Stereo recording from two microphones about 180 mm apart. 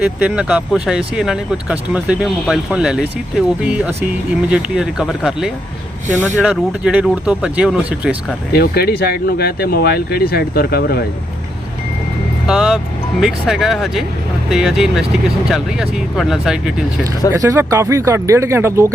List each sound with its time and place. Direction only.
0.2 s speech: 5° right (ahead or behind)
8.5 s speech: 60° left (ahead or behind)
12.5 s speech: 5° right (ahead or behind)
17.3 s speech: 20° right (ahead or behind)